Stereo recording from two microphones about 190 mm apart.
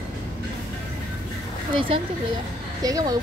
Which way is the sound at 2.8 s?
20° right (ahead or behind).